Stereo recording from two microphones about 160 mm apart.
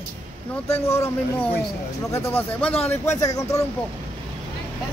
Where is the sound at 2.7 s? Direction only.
40° left (ahead or behind).